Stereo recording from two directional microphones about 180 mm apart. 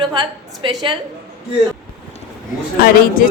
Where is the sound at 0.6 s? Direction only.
25° right (ahead or behind).